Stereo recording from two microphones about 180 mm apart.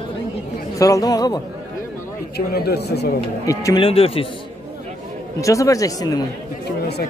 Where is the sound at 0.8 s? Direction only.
20° left (ahead or behind).